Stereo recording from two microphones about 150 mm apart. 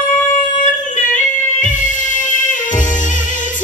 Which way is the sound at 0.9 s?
55° left (ahead or behind).